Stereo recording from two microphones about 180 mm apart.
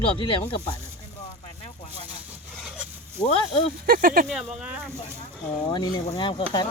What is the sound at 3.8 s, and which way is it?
Speech, 50° right (ahead or behind).